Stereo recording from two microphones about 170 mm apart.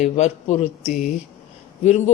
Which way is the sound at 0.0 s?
40° left (ahead or behind).